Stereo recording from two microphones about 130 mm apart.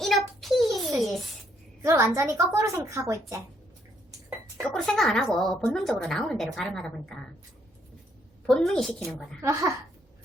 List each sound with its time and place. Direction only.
0.0 s a sound: centre (ahead or behind)
1.8 s a woman's voice: 20° right (ahead or behind)
4.7 s a woman's voice: centre (ahead or behind)
8.4 s a woman's voice: 5° left (ahead or behind)
9.4 s a woman's voice: 25° right (ahead or behind)